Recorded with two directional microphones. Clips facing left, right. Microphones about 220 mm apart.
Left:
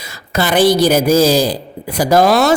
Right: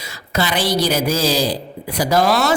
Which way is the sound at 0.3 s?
50° left (ahead or behind).